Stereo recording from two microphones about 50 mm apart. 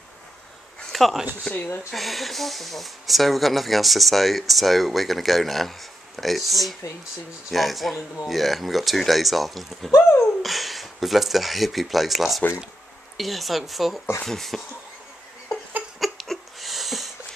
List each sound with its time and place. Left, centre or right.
0.9 s speech: centre
1.5 s speech: left
1.9 s speech: centre
16.0 s a sound: centre